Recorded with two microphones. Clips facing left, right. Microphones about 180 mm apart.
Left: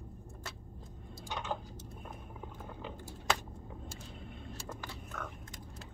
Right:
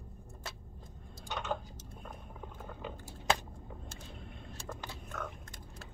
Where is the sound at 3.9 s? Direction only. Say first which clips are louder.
Left 1 dB; centre (ahead or behind).